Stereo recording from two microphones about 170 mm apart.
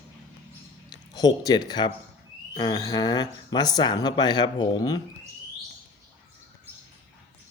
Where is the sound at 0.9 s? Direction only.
25° left (ahead or behind).